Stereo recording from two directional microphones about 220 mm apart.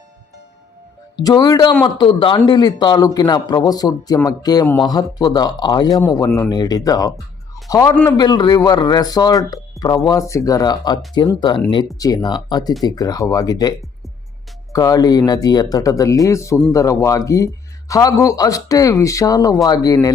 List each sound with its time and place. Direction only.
1.2 s a man's voice: 15° left (ahead or behind)